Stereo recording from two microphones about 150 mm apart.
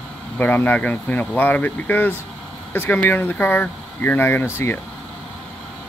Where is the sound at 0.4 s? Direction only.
10° left (ahead or behind).